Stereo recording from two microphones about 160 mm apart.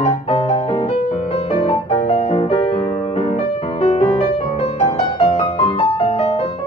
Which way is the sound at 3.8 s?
40° left (ahead or behind).